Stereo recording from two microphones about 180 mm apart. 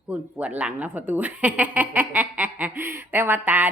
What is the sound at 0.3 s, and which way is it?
Speech, 10° right (ahead or behind).